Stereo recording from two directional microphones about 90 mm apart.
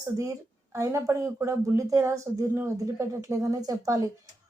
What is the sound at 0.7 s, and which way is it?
Speech, 35° right (ahead or behind).